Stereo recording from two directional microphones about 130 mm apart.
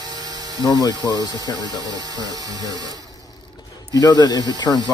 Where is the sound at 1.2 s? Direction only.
30° left (ahead or behind).